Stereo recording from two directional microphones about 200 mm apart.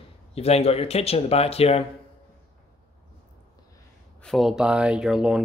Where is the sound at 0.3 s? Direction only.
30° left (ahead or behind).